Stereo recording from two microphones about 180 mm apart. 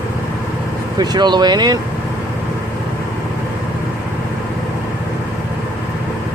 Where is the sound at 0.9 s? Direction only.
20° right (ahead or behind).